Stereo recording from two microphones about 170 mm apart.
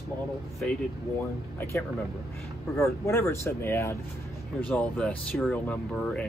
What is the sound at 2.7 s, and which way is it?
Speech, 15° left (ahead or behind).